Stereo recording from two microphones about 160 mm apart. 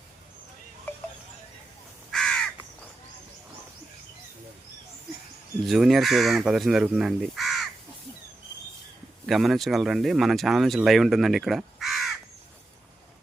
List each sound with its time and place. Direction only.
2.1 s crow: centre (ahead or behind)
5.6 s speech: centre (ahead or behind)
9.2 s speech: centre (ahead or behind)